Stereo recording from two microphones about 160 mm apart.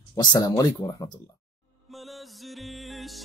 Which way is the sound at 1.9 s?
Centre (ahead or behind).